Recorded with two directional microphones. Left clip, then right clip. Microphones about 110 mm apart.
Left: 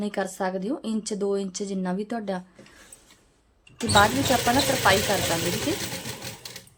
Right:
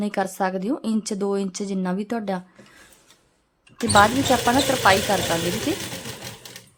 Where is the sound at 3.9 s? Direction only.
35° right (ahead or behind).